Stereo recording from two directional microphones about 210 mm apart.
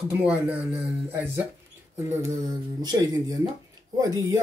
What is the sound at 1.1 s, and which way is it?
Speech, 10° right (ahead or behind).